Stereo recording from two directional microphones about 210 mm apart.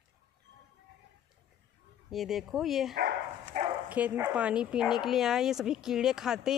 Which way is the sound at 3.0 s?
50° right (ahead or behind).